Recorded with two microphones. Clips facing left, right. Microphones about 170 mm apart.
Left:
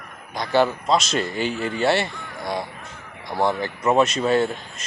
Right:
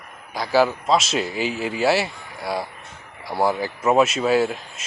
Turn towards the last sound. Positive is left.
turn(degrees=-5)  # may be behind; listen again after turning